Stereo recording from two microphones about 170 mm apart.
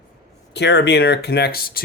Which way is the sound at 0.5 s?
90° left.